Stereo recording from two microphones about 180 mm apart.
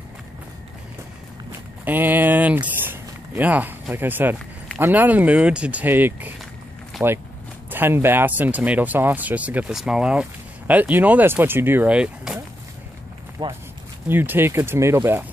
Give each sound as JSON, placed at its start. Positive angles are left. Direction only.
{"t": 1.9, "sound": "a sound", "side_deg": -10}
{"t": 4.7, "sound": "speech", "side_deg": -10}
{"t": 13.4, "sound": "speech", "side_deg": -30}
{"t": 14.0, "sound": "speech", "side_deg": -10}